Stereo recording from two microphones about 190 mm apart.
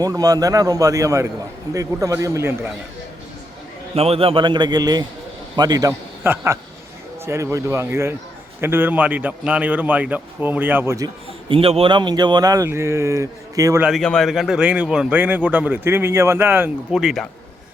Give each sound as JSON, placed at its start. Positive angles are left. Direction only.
{"t": 0.0, "sound": "a man's voice", "side_deg": -20}
{"t": 3.9, "sound": "a man's voice", "side_deg": -30}
{"t": 11.4, "sound": "speech", "side_deg": -30}
{"t": 13.8, "sound": "a man's voice", "side_deg": 0}